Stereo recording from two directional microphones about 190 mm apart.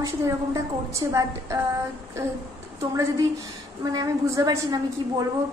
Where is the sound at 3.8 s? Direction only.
20° right (ahead or behind).